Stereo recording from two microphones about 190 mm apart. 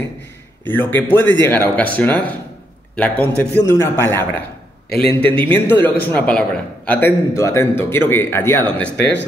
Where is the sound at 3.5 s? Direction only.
15° left (ahead or behind).